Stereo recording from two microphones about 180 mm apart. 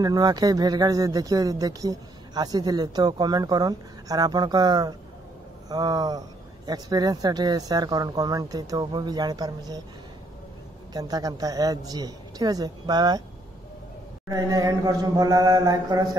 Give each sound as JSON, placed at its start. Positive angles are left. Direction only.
{"t": 0.0, "sound": "speech", "side_deg": -20}
{"t": 10.9, "sound": "speech", "side_deg": -20}
{"t": 14.3, "sound": "speech", "side_deg": -20}